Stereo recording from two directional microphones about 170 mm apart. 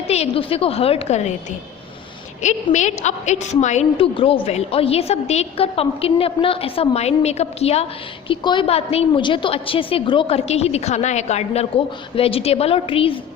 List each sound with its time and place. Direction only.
0.1 s a woman's voice: 35° left (ahead or behind)
2.4 s a woman's voice: 45° left (ahead or behind)